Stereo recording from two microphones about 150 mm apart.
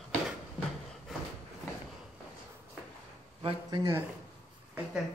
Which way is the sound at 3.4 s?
35° right (ahead or behind).